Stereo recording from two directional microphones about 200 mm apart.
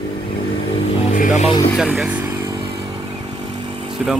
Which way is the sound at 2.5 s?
25° right (ahead or behind).